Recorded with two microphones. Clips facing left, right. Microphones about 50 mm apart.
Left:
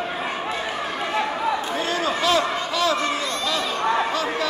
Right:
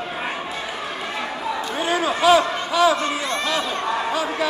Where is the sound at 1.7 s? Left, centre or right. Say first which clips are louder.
Right 2 dB; centre.